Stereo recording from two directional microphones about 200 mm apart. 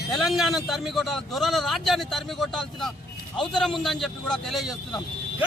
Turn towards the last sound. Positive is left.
turn(degrees=0)  # may be behind; listen again after turning